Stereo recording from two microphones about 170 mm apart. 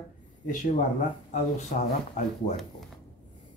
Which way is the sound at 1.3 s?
45° left (ahead or behind).